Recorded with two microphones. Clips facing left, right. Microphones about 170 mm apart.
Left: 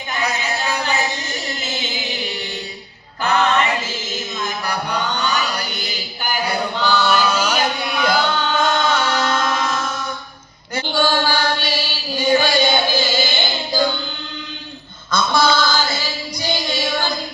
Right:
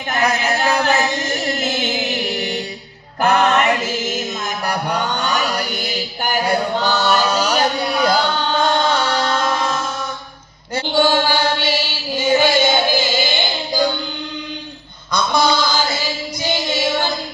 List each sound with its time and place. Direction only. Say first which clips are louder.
0.1 s music: right 5 dB; 60° right (ahead or behind)
3.2 s music: right 3 dB; 50° right (ahead or behind)
4.4 s chant: right 1 dB; 45° right (ahead or behind); by 13.2 s 20° right (ahead or behind)
15.1 s a sound: even; 15° right (ahead or behind)
16.4 s music: right 2 dB; 20° right (ahead or behind)